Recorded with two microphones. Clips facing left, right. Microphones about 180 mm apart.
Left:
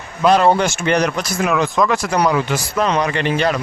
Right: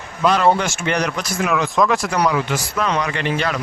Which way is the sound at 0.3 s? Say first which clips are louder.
Left 3 dB; 40° left (ahead or behind).